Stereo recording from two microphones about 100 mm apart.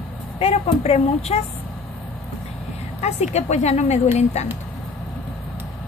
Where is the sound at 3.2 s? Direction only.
90° left.